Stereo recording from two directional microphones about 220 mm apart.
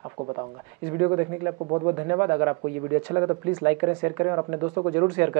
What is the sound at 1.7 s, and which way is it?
Speech, 20° right (ahead or behind).